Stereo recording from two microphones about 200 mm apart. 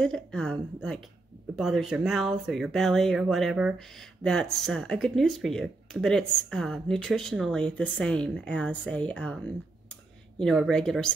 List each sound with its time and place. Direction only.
0.0 s speech: 5° left (ahead or behind)
10.4 s speech: centre (ahead or behind)